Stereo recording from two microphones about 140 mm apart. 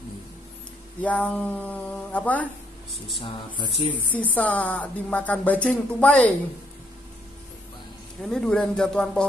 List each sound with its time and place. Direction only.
1.0 s speech: 10° left (ahead or behind)
3.2 s speech: 40° left (ahead or behind)
4.1 s speech: 10° left (ahead or behind)
8.2 s speech: 5° left (ahead or behind)